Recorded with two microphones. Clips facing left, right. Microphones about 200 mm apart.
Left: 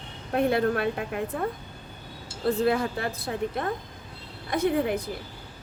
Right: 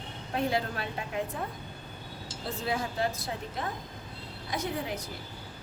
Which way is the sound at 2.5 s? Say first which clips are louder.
Left 9 dB; 60° left (ahead or behind).